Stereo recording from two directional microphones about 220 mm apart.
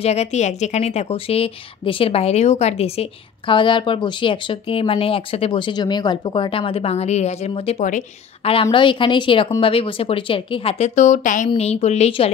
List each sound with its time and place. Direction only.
0.0 s a woman's voice: 30° left (ahead or behind)